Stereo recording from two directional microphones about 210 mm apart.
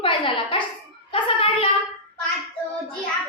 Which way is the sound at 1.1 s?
25° left (ahead or behind).